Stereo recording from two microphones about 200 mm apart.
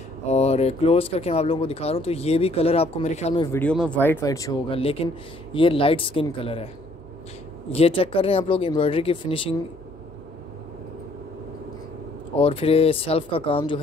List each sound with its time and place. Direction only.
0.3 s speech: 30° left (ahead or behind)
3.5 s speech: 5° left (ahead or behind)
4.7 s speech: 30° left (ahead or behind)
7.7 s speech: 30° left (ahead or behind)
12.4 s speech: 30° left (ahead or behind)